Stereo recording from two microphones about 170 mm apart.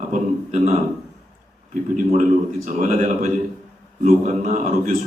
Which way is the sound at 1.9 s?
45° right (ahead or behind).